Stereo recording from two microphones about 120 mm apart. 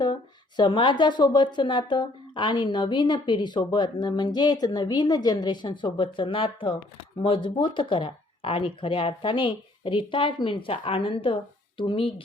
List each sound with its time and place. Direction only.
0.0 s speech: 40° left (ahead or behind)